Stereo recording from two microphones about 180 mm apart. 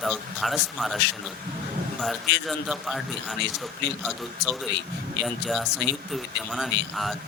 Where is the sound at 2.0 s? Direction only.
Centre (ahead or behind).